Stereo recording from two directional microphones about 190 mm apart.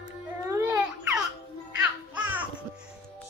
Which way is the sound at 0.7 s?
5° right (ahead or behind).